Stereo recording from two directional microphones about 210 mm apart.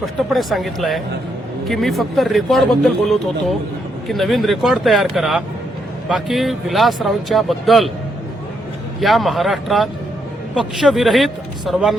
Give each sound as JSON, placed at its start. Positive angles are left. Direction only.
{"t": 0.0, "sound": "speech", "side_deg": 0}
{"t": 9.0, "sound": "speech", "side_deg": 0}